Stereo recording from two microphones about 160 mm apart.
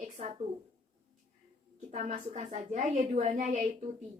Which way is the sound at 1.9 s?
50° right (ahead or behind).